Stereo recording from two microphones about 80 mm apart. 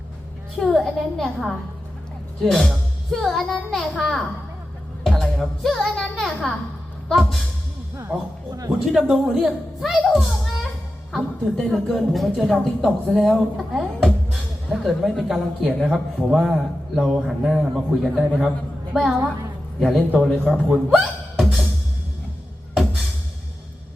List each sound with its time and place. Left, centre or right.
0.6 s speech: centre
8.4 s speech: right
8.9 s speech: centre
20.9 s music: centre